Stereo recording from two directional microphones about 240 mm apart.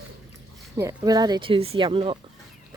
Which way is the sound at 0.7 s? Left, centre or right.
Centre.